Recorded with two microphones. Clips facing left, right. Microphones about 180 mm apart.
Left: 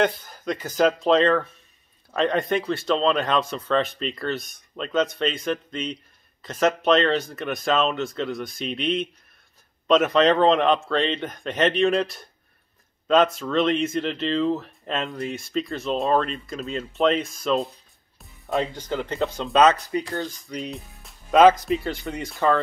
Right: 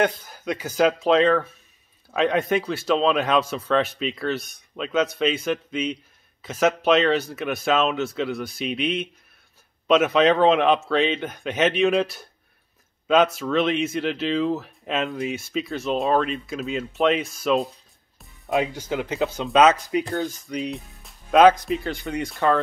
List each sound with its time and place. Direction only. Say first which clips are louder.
0.0 s speech: even; centre (ahead or behind)
19.9 s speech: right 3 dB; 15° right (ahead or behind)
20.2 s speech: right 4 dB; 5° right (ahead or behind)